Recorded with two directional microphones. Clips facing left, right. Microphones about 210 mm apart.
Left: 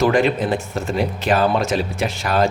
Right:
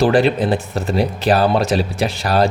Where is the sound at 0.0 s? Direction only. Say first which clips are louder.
Right 2 dB; 35° right (ahead or behind).